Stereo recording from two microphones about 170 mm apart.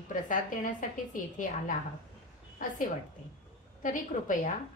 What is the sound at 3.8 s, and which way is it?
Speech, 50° left (ahead or behind).